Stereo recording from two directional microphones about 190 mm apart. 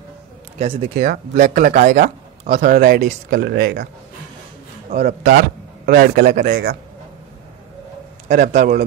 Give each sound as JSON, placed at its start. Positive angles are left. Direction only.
{"t": 0.6, "sound": "speech", "side_deg": -35}
{"t": 0.9, "sound": "speech", "side_deg": -50}
{"t": 4.9, "sound": "speech", "side_deg": -50}
{"t": 8.3, "sound": "speech", "side_deg": -45}